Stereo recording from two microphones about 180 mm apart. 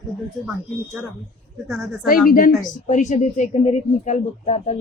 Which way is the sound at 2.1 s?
50° left (ahead or behind).